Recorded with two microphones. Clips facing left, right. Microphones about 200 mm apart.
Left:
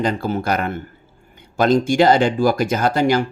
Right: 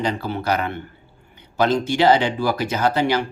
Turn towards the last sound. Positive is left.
turn(degrees=45)  # may be behind; listen again after turning